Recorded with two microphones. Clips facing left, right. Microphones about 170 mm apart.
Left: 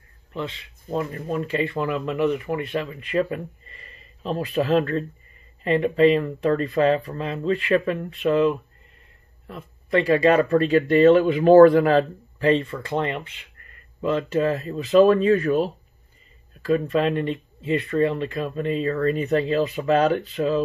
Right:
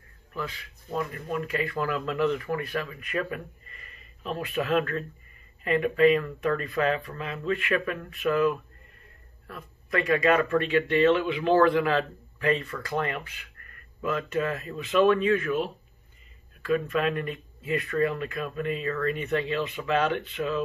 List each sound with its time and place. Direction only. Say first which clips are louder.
0.3 s speech: left 4 dB; 25° left (ahead or behind)